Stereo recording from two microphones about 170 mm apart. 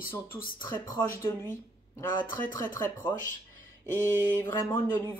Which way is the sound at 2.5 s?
15° left (ahead or behind).